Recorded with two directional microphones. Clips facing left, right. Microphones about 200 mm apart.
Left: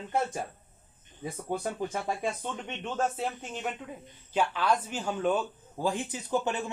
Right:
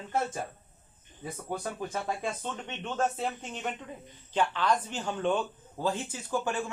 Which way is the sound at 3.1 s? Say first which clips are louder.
Even; 5° left (ahead or behind).